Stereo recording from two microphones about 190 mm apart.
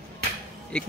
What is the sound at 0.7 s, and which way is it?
Speech, 5° left (ahead or behind).